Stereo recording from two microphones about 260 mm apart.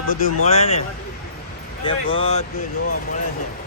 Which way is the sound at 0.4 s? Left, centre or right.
Left.